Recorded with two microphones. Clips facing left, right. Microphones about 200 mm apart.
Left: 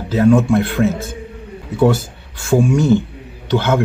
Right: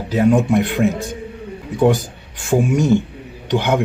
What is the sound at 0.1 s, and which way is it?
Speech, 15° right (ahead or behind).